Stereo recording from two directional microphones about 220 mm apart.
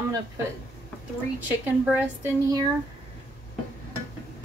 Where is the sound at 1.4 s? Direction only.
10° right (ahead or behind).